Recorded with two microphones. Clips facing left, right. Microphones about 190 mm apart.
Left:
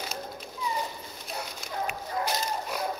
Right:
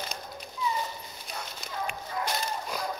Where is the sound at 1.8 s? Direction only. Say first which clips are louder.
Left 2 dB; 5° left (ahead or behind).